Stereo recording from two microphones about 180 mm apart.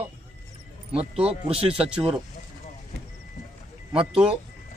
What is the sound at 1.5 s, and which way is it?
Speech, 30° right (ahead or behind).